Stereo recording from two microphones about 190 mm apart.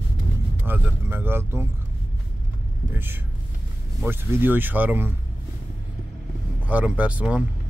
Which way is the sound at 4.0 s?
10° right (ahead or behind).